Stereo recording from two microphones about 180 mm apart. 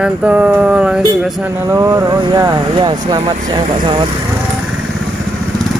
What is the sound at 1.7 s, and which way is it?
Speech, 15° right (ahead or behind).